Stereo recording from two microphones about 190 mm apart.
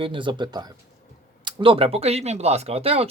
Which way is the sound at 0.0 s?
25° right (ahead or behind).